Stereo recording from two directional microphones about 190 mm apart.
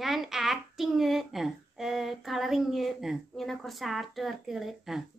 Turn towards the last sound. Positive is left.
turn(degrees=0)  # may be behind; listen again after turning